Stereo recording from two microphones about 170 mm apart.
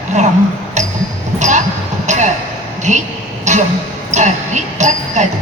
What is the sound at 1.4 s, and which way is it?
Basketball bounce, 45° right (ahead or behind).